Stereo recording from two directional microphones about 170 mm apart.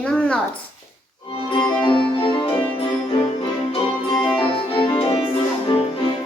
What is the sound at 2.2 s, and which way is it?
Music, 30° left (ahead or behind).